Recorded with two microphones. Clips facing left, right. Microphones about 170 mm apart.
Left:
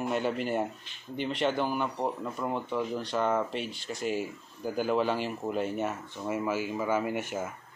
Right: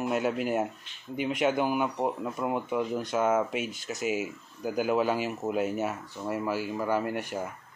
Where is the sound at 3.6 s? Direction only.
45° right (ahead or behind).